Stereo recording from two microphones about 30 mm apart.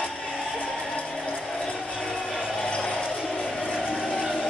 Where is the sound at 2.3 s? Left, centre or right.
Right.